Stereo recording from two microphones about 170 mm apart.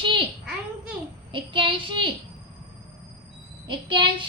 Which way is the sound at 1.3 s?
30° right (ahead or behind).